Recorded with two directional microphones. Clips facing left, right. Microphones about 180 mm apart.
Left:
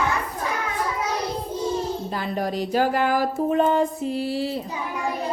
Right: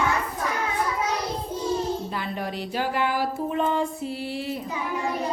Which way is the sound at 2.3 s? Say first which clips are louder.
Left 9 dB; 40° left (ahead or behind).